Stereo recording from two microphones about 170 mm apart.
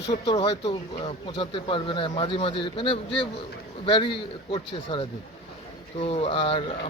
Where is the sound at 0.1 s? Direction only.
25° left (ahead or behind).